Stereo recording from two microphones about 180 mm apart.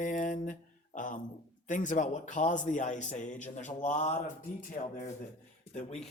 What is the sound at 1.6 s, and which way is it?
A man's voice, 45° left (ahead or behind).